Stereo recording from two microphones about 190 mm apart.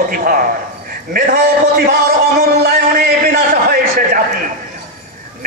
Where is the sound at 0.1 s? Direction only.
45° right (ahead or behind).